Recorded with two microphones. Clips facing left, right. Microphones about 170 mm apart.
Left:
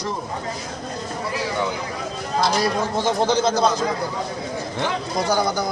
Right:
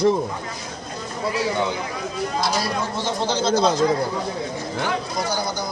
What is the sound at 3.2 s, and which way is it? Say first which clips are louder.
Speech: left 1 dB; 50° left (ahead or behind).